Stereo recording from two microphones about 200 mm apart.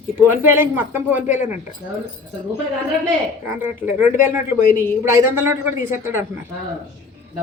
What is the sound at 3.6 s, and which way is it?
A man's voice, 10° right (ahead or behind).